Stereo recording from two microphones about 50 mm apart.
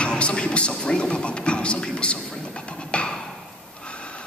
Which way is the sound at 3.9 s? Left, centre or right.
Left.